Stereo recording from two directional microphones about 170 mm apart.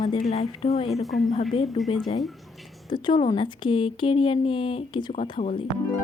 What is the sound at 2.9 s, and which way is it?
Speech, 30° left (ahead or behind).